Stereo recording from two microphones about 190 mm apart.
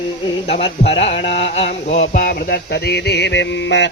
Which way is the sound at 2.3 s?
55° left (ahead or behind).